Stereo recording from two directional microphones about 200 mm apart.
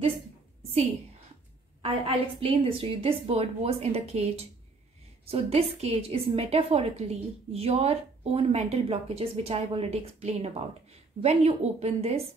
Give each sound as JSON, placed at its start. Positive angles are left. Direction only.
{"t": 1.8, "sound": "a woman's voice", "side_deg": -30}